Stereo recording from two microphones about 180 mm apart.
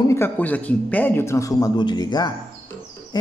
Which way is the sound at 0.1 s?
10° left (ahead or behind).